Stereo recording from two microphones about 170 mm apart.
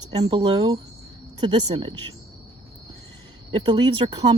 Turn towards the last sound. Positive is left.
turn(degrees=-25)  # may be behind; listen again after turning